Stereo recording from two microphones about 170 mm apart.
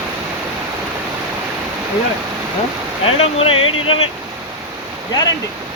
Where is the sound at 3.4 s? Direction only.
35° left (ahead or behind).